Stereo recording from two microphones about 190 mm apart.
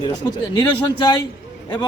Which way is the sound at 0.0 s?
20° left (ahead or behind).